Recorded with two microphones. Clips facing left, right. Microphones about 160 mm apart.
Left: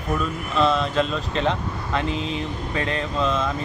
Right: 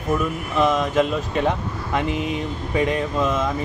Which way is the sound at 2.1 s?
60° right (ahead or behind).